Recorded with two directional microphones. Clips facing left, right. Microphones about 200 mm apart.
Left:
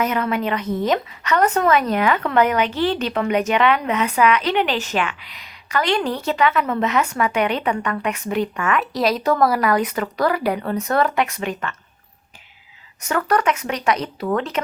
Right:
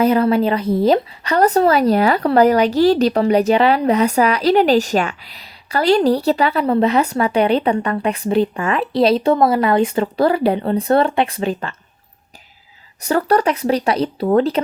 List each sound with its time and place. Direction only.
0.0 s speech: 30° right (ahead or behind)
13.0 s speech: 35° right (ahead or behind)